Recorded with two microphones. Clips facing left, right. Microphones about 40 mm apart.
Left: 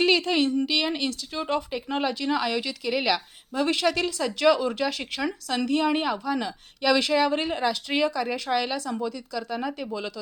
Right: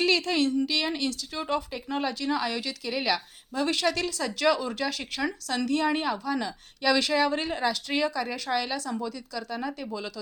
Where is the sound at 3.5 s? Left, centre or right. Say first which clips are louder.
Left 3 dB; left.